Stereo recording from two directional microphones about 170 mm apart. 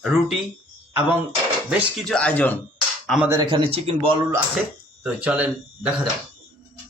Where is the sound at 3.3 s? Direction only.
25° right (ahead or behind).